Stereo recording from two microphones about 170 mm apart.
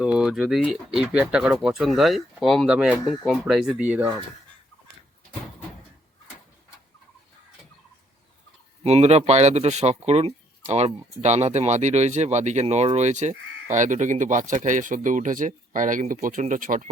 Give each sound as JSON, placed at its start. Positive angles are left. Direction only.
{"t": 0.0, "sound": "speech", "side_deg": -5}
{"t": 8.8, "sound": "speech", "side_deg": -40}